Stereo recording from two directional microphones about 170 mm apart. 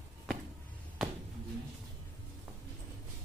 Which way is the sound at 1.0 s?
Centre (ahead or behind).